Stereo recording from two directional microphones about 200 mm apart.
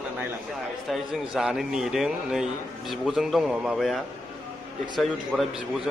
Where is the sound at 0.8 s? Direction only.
5° right (ahead or behind).